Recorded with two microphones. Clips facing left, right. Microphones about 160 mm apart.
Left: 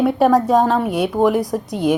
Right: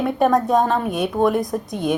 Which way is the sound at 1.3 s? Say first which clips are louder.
Left 2 dB; 75° left (ahead or behind).